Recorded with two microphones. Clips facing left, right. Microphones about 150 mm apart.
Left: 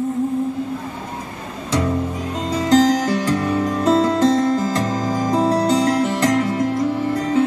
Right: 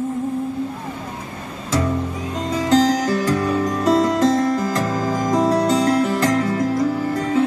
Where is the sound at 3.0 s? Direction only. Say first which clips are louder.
Even; 30° left (ahead or behind).